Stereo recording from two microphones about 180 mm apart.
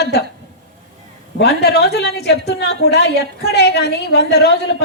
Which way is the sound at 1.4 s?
65° left (ahead or behind).